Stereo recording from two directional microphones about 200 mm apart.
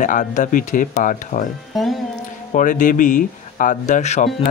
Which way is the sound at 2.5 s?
40° left (ahead or behind).